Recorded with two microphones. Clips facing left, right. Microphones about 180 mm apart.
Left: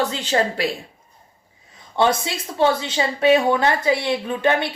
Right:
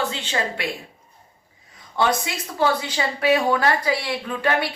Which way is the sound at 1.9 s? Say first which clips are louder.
Left 3 dB; 25° left (ahead or behind).